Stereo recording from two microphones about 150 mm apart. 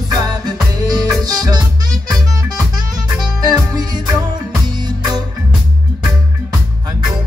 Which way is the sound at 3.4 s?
25° right (ahead or behind).